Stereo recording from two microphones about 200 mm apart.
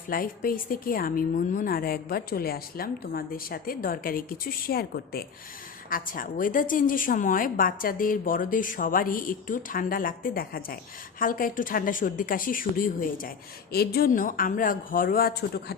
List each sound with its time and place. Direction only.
0.1 s a woman's voice: 45° left (ahead or behind)